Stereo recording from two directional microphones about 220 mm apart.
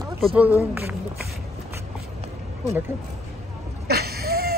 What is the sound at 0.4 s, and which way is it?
Speech, 10° right (ahead or behind).